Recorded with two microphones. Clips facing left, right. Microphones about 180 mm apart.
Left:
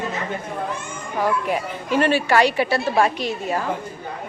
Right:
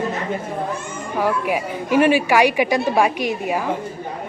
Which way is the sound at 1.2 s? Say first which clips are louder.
Right 1 dB; 10° right (ahead or behind).